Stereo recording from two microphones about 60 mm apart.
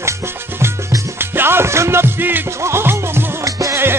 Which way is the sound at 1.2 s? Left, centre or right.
Right.